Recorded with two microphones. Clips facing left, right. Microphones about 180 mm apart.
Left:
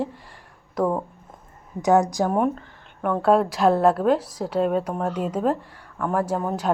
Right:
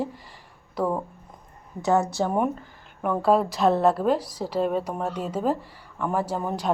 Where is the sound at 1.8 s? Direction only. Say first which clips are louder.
Left 4 dB; 15° left (ahead or behind).